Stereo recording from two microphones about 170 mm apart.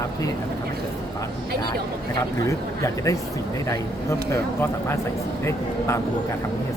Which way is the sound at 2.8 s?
20° left (ahead or behind).